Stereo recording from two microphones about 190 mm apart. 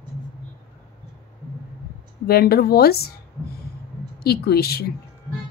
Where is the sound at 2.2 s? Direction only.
55° left (ahead or behind).